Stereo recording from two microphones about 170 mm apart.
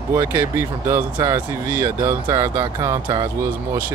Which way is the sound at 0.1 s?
15° right (ahead or behind).